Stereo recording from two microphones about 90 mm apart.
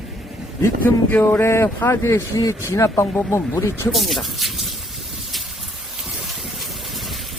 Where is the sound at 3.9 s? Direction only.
Centre (ahead or behind).